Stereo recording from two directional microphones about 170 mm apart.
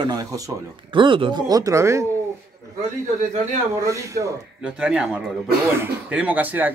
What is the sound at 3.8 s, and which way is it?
Speech, 20° right (ahead or behind).